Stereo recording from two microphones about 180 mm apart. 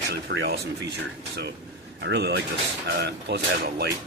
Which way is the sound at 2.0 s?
70° right (ahead or behind).